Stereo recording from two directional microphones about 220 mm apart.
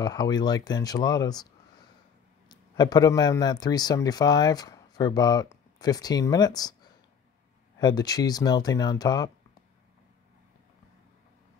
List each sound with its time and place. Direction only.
0.0 s a man's voice: 20° left (ahead or behind)
7.8 s speech: 15° left (ahead or behind)